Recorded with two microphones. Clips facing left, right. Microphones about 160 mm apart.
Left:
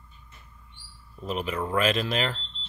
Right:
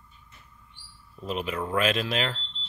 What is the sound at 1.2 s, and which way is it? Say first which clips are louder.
Speech: left 1 dB; centre (ahead or behind).